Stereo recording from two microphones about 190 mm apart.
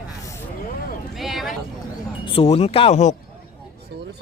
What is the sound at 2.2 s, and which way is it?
Speech, 30° left (ahead or behind).